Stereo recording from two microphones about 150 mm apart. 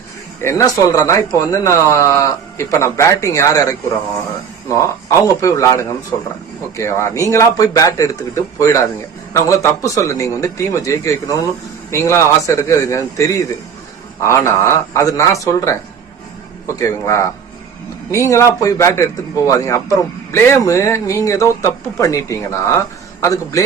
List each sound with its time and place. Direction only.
0.4 s speech: 20° left (ahead or behind)
16.8 s speech: 20° left (ahead or behind)